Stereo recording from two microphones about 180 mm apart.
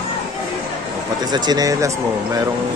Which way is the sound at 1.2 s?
25° right (ahead or behind).